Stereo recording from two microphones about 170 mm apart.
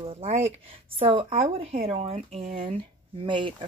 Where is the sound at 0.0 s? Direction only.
35° right (ahead or behind).